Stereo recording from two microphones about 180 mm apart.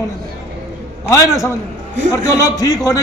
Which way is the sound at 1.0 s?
15° left (ahead or behind).